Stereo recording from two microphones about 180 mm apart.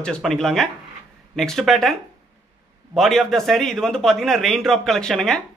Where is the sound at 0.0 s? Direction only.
5° left (ahead or behind).